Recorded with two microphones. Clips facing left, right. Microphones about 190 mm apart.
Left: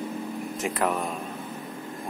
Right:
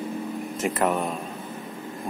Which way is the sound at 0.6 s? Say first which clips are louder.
Right 3 dB; centre (ahead or behind).